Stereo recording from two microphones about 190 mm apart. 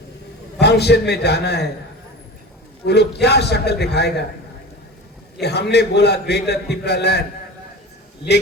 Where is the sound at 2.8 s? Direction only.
60° left (ahead or behind).